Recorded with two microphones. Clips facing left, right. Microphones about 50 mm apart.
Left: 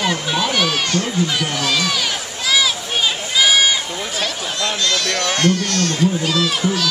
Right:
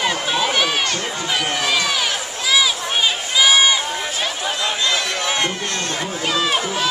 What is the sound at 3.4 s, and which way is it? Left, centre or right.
Run, centre.